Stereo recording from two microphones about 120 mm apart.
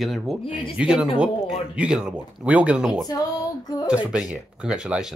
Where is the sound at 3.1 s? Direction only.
30° left (ahead or behind).